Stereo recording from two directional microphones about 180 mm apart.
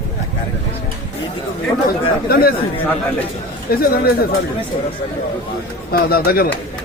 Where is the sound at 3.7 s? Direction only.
55° left (ahead or behind).